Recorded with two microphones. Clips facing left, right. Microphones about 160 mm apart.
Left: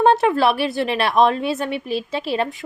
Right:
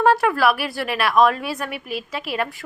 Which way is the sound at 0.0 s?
25° left (ahead or behind).